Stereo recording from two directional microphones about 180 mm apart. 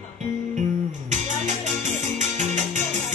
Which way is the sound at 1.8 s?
45° right (ahead or behind).